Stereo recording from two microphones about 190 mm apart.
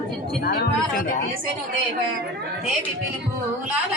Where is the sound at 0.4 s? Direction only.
55° left (ahead or behind).